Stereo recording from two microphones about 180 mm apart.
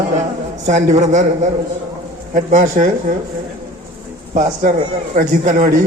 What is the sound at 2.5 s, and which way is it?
Speech, 45° right (ahead or behind).